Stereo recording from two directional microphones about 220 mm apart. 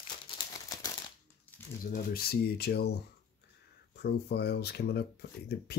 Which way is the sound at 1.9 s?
45° left (ahead or behind).